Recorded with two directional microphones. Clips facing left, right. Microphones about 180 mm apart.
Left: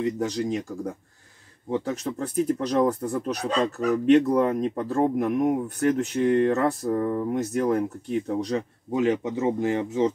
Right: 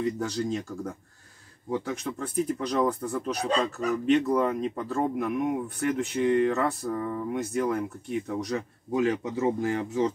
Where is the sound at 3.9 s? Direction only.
50° left (ahead or behind).